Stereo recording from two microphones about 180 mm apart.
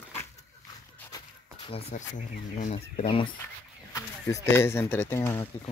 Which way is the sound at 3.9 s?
15° left (ahead or behind).